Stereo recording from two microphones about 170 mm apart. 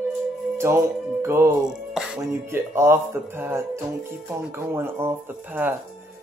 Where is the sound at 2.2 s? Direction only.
15° right (ahead or behind).